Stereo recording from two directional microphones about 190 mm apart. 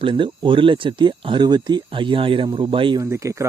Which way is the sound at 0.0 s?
25° right (ahead or behind).